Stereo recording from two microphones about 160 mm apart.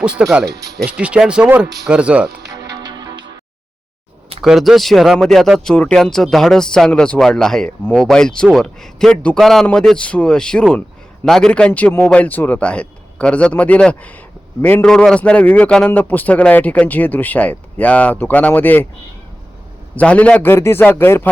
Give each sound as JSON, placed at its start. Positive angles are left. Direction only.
{"t": 0.4, "sound": "speech", "side_deg": -20}
{"t": 0.9, "sound": "speech", "side_deg": -5}
{"t": 2.6, "sound": "music", "side_deg": -25}
{"t": 4.4, "sound": "a man's voice", "side_deg": 0}
{"t": 20.0, "sound": "a man's voice", "side_deg": 10}